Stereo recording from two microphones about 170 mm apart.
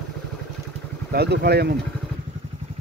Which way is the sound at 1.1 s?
75° right (ahead or behind).